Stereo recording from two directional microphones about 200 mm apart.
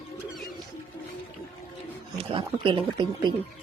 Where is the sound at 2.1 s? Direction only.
25° right (ahead or behind).